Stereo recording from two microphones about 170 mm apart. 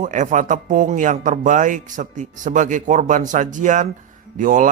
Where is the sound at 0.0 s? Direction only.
50° right (ahead or behind).